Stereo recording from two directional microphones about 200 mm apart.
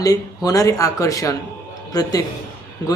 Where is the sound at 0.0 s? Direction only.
15° left (ahead or behind).